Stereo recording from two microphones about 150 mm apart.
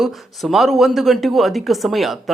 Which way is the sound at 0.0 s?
Centre (ahead or behind).